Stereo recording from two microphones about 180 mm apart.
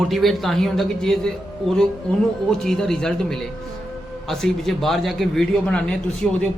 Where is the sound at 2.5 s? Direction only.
5° left (ahead or behind).